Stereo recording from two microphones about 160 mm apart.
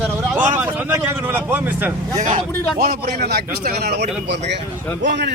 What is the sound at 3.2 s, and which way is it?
Speech, 80° right.